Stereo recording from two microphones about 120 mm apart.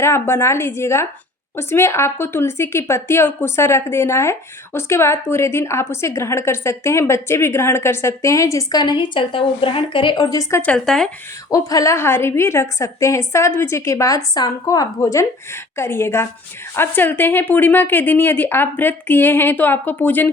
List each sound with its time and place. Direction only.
0.0 s a woman's voice: 25° left (ahead or behind)
10.6 s speech: 10° left (ahead or behind)
11.5 s a woman's voice: 30° left (ahead or behind)